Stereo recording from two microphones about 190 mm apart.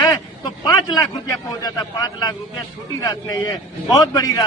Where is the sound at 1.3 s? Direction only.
20° left (ahead or behind).